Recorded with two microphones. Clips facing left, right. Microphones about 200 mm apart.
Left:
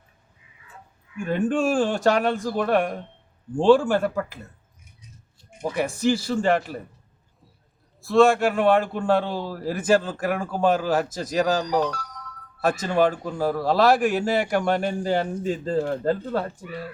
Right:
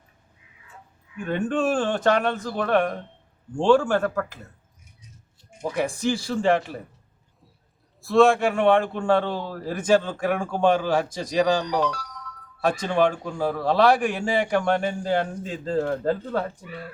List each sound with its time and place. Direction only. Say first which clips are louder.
1.2 s speech: left 1 dB; 10° left (ahead or behind)
5.6 s a man's voice: left 2 dB; 5° left (ahead or behind)
8.0 s a man's voice: even; centre (ahead or behind)
11.8 s speech: even; 45° left (ahead or behind)
12.6 s a man's voice: left 1 dB; 5° left (ahead or behind)